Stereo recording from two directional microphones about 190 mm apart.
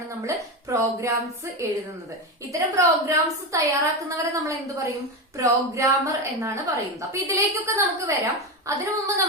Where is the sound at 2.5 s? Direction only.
15° right (ahead or behind).